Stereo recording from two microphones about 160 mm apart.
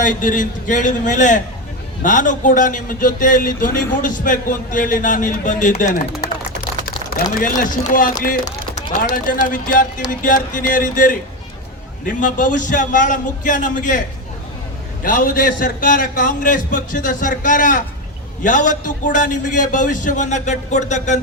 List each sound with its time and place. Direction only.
0.0 s a man's voice: 55° left (ahead or behind)
6.2 s typing: 65° left (ahead or behind)
7.1 s a man's voice: 60° left (ahead or behind)
15.0 s a man's voice: 60° left (ahead or behind)